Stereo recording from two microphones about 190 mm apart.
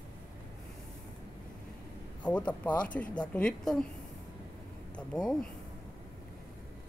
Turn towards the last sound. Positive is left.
turn(degrees=5)  # may be behind; listen again after turning